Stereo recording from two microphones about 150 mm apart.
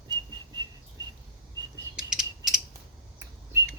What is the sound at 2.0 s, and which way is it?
Mechanisms, 5° right (ahead or behind).